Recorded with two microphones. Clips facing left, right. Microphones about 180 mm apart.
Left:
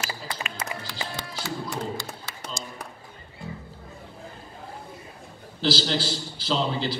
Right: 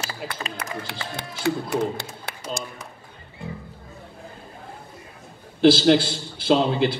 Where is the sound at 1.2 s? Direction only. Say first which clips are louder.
Right 12 dB; 60° right (ahead or behind).